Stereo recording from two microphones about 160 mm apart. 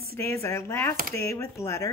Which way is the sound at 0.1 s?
15° left (ahead or behind).